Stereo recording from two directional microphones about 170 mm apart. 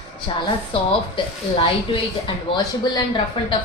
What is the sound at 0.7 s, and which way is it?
Speech, 30° left (ahead or behind).